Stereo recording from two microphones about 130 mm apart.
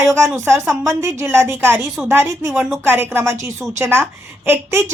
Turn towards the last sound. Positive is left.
turn(degrees=-20)  # may be behind; listen again after turning